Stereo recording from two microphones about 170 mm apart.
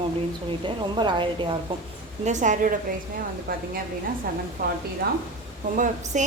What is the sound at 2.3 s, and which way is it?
A woman's voice, 45° right (ahead or behind).